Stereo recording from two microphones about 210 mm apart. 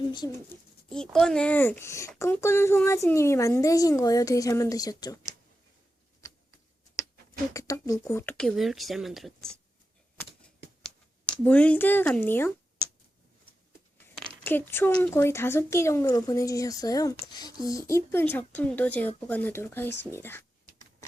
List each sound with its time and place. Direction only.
0.1 s a child's voice: 20° left (ahead or behind)
0.9 s speech: 5° left (ahead or behind)
7.5 s speech: 15° left (ahead or behind); by 9.5 s centre (ahead or behind)
10.2 s a sound: 5° left (ahead or behind)
14.4 s speech: 10° left (ahead or behind)